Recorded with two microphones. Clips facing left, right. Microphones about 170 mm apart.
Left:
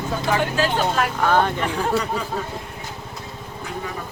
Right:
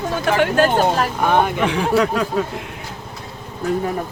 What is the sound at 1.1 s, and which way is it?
Speech, 15° right (ahead or behind).